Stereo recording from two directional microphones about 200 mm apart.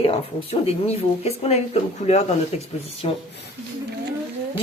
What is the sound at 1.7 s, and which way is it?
Speech, 35° left (ahead or behind).